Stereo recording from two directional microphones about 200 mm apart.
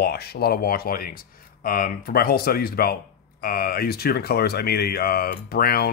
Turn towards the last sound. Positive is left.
turn(degrees=50)  # may be behind; listen again after turning